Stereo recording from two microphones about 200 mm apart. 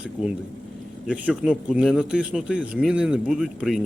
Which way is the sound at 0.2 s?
Centre (ahead or behind).